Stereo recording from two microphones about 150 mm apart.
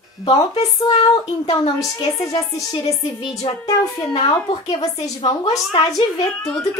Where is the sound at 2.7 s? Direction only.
35° left (ahead or behind).